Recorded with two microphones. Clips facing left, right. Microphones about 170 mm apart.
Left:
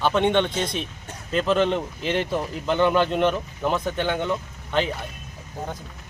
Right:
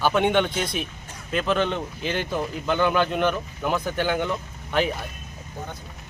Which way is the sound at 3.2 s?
Centre (ahead or behind).